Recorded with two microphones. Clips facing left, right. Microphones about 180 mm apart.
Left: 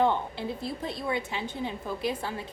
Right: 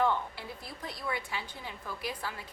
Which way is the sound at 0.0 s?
25° left (ahead or behind).